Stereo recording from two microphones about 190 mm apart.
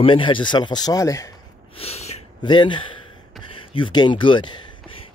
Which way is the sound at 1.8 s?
35° left (ahead or behind).